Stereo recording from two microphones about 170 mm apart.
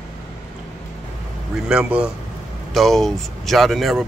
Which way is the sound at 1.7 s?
5° right (ahead or behind).